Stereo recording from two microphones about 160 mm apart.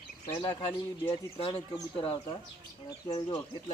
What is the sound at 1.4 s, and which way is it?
Speech, 35° left (ahead or behind).